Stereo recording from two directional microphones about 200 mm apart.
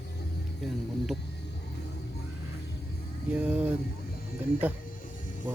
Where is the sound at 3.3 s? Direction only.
5° right (ahead or behind).